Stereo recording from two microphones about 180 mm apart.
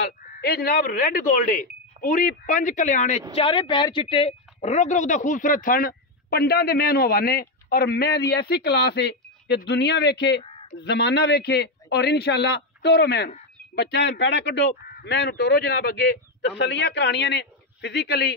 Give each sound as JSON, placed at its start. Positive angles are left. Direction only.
{"t": 0.4, "sound": "speech", "side_deg": 60}
{"t": 3.3, "sound": "speech", "side_deg": 30}
{"t": 10.4, "sound": "a sound", "side_deg": 30}
{"t": 10.8, "sound": "speech", "side_deg": 70}